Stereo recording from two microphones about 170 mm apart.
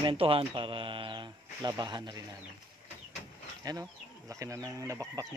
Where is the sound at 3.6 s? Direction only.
20° right (ahead or behind).